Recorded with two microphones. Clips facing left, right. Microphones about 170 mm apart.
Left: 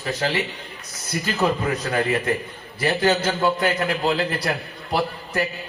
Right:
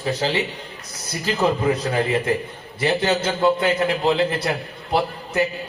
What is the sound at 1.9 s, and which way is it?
A man's voice, 25° right (ahead or behind).